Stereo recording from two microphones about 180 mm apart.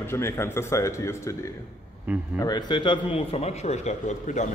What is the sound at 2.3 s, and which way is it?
A man's voice, 25° left (ahead or behind).